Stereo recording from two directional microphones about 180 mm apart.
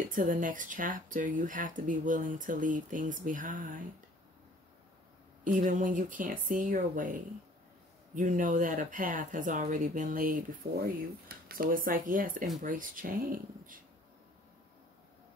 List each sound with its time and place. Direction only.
0.1 s speech: 45° right (ahead or behind)
5.4 s speech: 45° right (ahead or behind)